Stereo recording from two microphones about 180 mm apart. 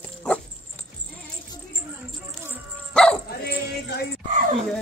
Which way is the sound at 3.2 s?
60° left (ahead or behind).